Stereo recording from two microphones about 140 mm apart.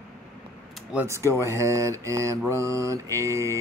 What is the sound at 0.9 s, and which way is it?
Mantra, 20° right (ahead or behind).